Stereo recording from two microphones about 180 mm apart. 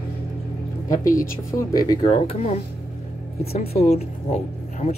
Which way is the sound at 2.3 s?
35° left (ahead or behind).